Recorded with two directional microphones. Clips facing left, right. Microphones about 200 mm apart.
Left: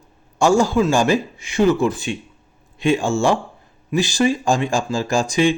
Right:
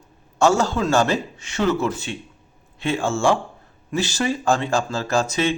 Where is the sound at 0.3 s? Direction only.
10° left (ahead or behind).